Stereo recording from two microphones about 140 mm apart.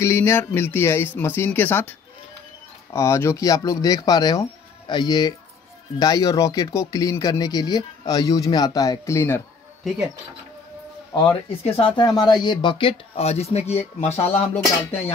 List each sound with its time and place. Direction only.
0.0 s speech: 20° left (ahead or behind)
11.6 s speech: 40° left (ahead or behind)